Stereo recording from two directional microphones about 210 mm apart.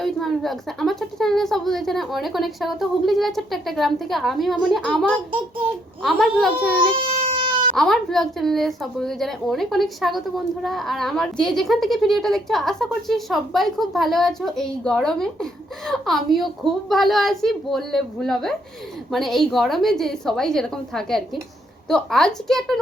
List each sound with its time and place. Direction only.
0.0 s a woman's voice: centre (ahead or behind)
6.9 s baby cry: 25° right (ahead or behind)
7.8 s a woman's voice: centre (ahead or behind)